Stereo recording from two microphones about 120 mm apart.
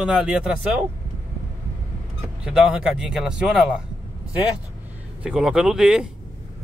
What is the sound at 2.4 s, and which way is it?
A man's voice, 5° right (ahead or behind).